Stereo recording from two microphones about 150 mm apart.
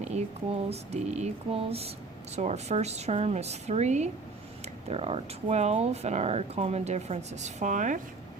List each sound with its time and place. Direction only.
0.7 s speech: 45° right (ahead or behind)